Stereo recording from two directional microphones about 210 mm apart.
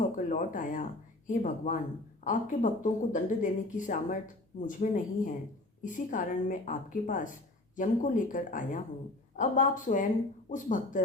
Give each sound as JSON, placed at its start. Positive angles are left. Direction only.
{"t": 0.3, "sound": "speech", "side_deg": 40}